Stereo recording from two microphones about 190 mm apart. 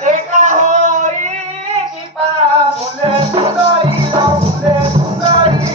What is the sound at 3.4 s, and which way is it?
Music, 30° right (ahead or behind).